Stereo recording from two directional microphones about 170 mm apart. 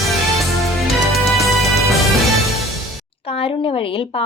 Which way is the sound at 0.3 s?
Centre (ahead or behind).